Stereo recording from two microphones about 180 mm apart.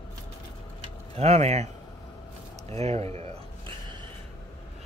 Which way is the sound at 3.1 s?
25° right (ahead or behind).